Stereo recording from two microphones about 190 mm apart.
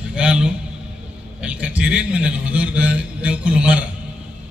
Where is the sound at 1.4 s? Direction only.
5° right (ahead or behind).